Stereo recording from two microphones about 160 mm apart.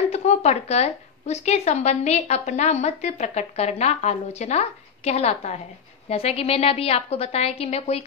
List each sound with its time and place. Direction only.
0.1 s a woman's voice: 45° left (ahead or behind)